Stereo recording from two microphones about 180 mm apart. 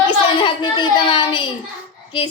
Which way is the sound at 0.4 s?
25° left (ahead or behind).